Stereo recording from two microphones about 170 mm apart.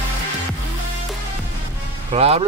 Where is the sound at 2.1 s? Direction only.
35° right (ahead or behind).